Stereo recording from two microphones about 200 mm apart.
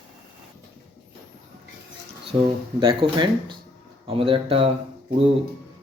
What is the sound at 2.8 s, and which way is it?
Speech, 25° right (ahead or behind).